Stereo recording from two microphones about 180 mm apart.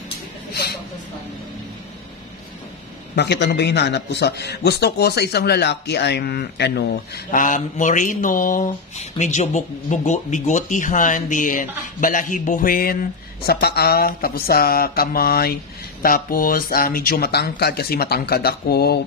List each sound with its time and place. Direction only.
3.2 s a man's voice: 70° left (ahead or behind)
7.2 s speech: 50° left (ahead or behind)